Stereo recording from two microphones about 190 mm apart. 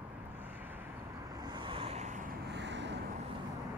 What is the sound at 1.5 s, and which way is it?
Vehicle, 25° right (ahead or behind).